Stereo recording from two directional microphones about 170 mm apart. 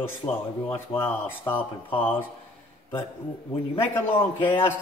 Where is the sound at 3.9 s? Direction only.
10° left (ahead or behind).